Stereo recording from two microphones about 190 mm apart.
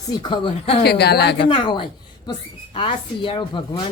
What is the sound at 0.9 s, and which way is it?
Speech, 60° left (ahead or behind).